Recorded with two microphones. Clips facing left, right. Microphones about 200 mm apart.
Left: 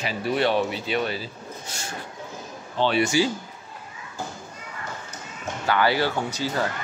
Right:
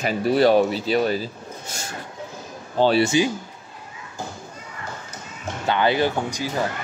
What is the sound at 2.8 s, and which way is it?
Speech, 35° right (ahead or behind).